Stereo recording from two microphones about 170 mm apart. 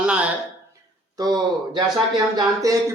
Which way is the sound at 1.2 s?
25° right (ahead or behind).